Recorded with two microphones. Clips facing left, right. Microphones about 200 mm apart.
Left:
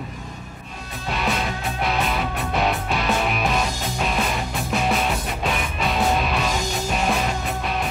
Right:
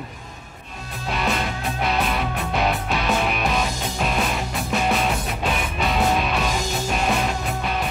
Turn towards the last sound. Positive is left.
turn(degrees=0)  # may be behind; listen again after turning